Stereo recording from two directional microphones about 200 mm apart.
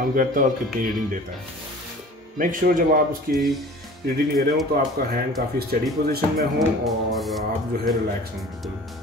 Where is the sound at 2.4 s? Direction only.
45° right (ahead or behind).